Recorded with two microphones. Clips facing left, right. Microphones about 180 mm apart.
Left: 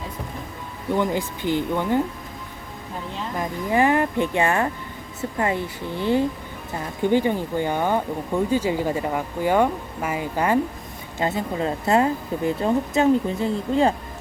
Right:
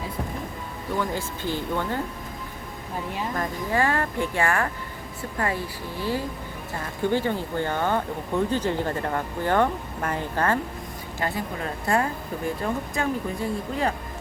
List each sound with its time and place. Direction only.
0.9 s speech: 20° left (ahead or behind)
3.3 s speech: 15° left (ahead or behind)